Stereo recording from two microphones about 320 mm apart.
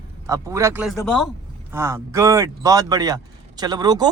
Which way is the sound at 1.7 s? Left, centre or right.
Centre.